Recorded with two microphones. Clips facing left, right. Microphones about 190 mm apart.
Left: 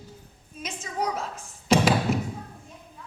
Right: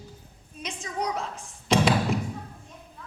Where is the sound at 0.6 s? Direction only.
5° left (ahead or behind).